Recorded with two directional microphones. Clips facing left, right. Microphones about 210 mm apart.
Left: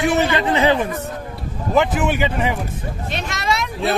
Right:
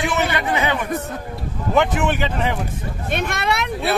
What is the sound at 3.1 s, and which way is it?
Speech, 55° right (ahead or behind).